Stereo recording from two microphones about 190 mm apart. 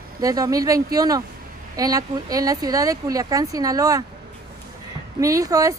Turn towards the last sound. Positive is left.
turn(degrees=-20)  # may be behind; listen again after turning